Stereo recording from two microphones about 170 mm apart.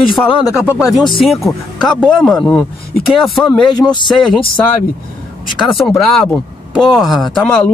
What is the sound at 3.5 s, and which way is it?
Speech, 25° left (ahead or behind).